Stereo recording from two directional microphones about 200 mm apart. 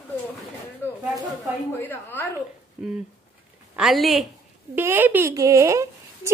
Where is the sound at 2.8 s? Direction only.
5° right (ahead or behind).